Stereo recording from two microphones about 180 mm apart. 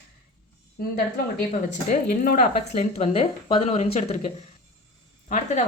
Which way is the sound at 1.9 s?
50° left (ahead or behind).